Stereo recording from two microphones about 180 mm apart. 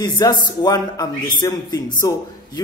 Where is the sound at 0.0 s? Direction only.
20° left (ahead or behind).